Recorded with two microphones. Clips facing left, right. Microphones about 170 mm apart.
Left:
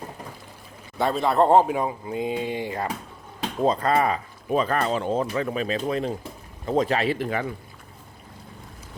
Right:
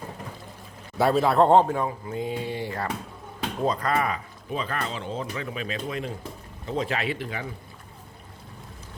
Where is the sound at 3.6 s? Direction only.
30° left (ahead or behind).